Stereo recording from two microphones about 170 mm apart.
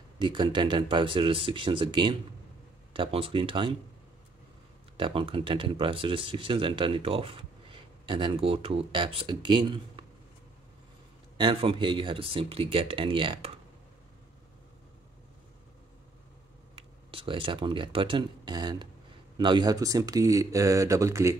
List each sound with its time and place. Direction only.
0.2 s speech: 30° right (ahead or behind)
4.9 s speech: 30° right (ahead or behind)
11.3 s speech: 30° right (ahead or behind)
16.7 s speech: 30° right (ahead or behind); by 21.4 s 15° right (ahead or behind)